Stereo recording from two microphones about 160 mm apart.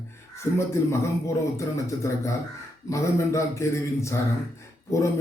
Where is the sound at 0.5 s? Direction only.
15° left (ahead or behind).